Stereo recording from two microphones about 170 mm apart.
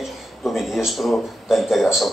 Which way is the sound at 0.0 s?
Centre (ahead or behind).